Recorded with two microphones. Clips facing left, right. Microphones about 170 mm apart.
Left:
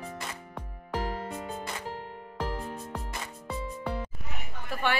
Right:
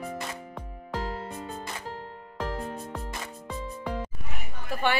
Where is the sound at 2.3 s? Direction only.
10° left (ahead or behind).